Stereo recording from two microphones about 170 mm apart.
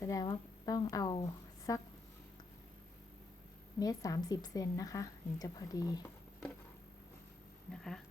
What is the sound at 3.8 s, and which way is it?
A woman's voice, 20° left (ahead or behind).